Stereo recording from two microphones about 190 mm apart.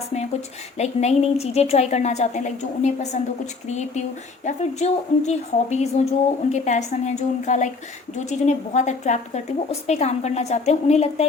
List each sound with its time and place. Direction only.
0.8 s speech: 35° left (ahead or behind)